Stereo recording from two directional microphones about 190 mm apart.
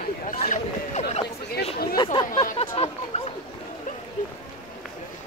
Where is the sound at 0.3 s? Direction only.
40° left (ahead or behind).